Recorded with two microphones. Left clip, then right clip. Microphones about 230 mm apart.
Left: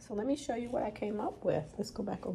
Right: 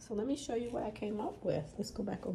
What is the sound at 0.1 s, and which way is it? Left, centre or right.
Speech, centre.